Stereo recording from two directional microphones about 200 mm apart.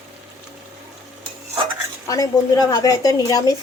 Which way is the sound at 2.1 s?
15° left (ahead or behind).